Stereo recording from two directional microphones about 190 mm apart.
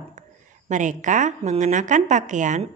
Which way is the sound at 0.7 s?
40° right (ahead or behind).